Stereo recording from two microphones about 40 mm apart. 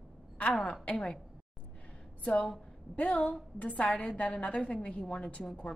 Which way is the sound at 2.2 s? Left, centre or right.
Left.